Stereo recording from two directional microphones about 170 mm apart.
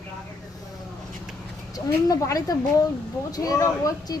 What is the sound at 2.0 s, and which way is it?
Speech, 20° left (ahead or behind).